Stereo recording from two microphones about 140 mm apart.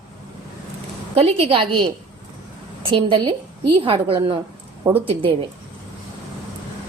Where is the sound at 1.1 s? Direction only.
45° right (ahead or behind).